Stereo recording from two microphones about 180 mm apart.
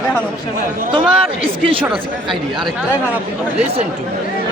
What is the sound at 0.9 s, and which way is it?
Speech, 30° right (ahead or behind).